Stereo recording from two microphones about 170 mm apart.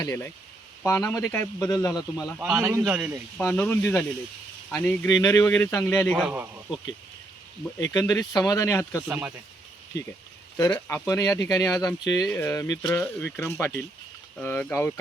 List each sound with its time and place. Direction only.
0.0 s speech: 15° left (ahead or behind)
2.1 s a man's voice: 5° right (ahead or behind)
3.3 s speech: 10° left (ahead or behind)
6.1 s a man's voice: 10° right (ahead or behind)
7.8 s speech: 20° left (ahead or behind)
9.0 s speech: 10° right (ahead or behind)
10.6 s speech: 20° left (ahead or behind)